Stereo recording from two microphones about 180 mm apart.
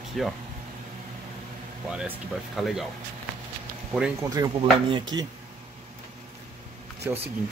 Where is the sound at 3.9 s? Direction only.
15° right (ahead or behind).